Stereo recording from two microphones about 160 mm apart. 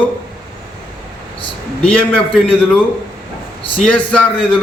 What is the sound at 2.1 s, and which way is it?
Speech, 10° left (ahead or behind).